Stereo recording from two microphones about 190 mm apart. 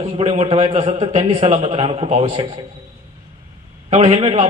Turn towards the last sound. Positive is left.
turn(degrees=-35)  # may be behind; listen again after turning